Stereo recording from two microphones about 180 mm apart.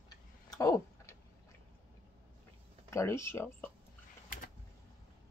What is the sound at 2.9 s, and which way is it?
Speech, 15° left (ahead or behind).